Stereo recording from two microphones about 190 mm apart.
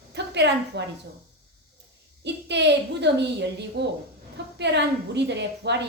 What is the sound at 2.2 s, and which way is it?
A woman's voice, 65° right (ahead or behind).